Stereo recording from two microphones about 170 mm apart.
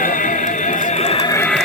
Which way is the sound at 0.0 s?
50° left (ahead or behind).